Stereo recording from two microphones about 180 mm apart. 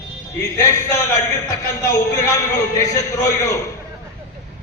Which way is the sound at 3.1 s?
20° left (ahead or behind).